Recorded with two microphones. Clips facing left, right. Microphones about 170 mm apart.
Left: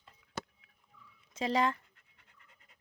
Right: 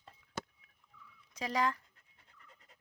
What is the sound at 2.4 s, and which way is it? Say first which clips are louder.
Pant: right 6 dB; 40° right (ahead or behind).